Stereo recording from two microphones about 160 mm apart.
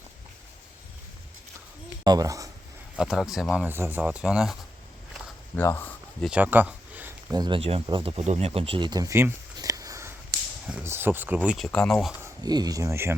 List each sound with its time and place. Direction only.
2.0 s speech: 20° right (ahead or behind)
2.9 s speech: centre (ahead or behind)
5.5 s speech: 15° left (ahead or behind)
6.2 s a sound: 10° right (ahead or behind)
7.3 s speech: 30° right (ahead or behind); by 11.3 s 10° right (ahead or behind)
11.4 s speech: centre (ahead or behind)
12.2 s speech: 25° right (ahead or behind)